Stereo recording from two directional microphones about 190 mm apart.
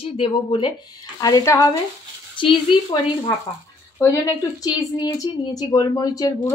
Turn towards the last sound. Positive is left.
turn(degrees=20)  # may be behind; listen again after turning